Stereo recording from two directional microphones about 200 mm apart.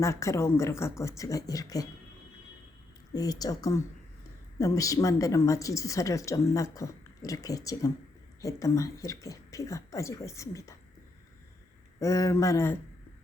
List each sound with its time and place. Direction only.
0.0 s speech: 15° left (ahead or behind)
3.1 s speech: 20° left (ahead or behind)
11.9 s speech: 15° left (ahead or behind)